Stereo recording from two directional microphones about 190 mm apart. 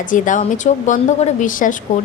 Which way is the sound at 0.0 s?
45° left (ahead or behind).